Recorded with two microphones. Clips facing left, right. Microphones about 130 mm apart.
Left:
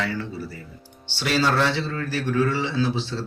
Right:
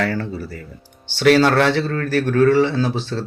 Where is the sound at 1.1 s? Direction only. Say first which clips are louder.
Right 8 dB; 60° right (ahead or behind).